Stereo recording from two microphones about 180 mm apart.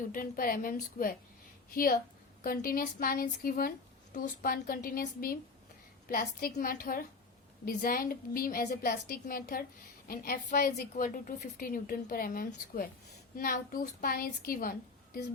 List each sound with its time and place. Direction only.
0.1 s a woman's voice: 50° left (ahead or behind)